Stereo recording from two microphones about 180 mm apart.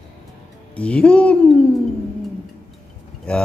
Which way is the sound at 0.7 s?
5° left (ahead or behind).